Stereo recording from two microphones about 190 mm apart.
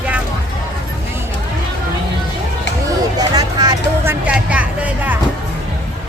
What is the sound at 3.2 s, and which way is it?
Hubbub, 20° right (ahead or behind).